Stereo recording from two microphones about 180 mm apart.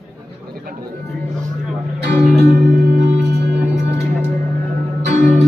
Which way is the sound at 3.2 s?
70° right (ahead or behind).